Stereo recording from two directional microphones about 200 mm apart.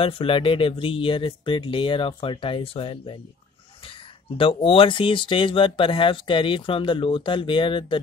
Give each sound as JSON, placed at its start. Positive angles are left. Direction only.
{"t": 0.0, "sound": "speech", "side_deg": 25}
{"t": 4.4, "sound": "speech", "side_deg": 25}